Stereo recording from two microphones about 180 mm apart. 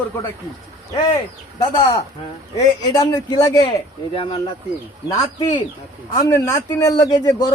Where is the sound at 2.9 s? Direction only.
20° left (ahead or behind).